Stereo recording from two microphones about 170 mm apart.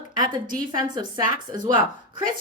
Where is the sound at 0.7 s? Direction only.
25° right (ahead or behind).